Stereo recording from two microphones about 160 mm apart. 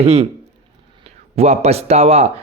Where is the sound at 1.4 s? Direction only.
40° right (ahead or behind).